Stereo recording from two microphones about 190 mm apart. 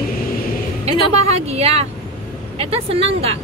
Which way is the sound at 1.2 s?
35° right (ahead or behind).